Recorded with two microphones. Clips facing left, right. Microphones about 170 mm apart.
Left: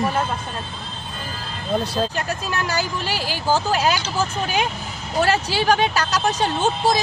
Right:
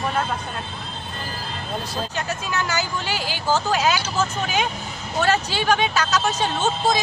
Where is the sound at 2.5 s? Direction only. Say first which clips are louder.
Even; 35° left (ahead or behind).